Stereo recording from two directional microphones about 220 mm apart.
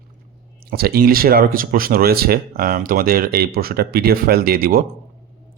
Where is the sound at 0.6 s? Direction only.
45° right (ahead or behind).